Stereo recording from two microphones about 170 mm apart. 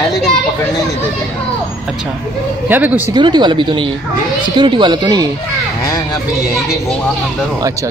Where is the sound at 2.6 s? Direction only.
10° right (ahead or behind).